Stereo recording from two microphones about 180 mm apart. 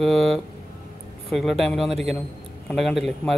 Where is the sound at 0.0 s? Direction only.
Centre (ahead or behind).